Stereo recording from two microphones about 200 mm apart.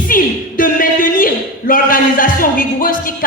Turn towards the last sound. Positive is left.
turn(degrees=45)  # may be behind; listen again after turning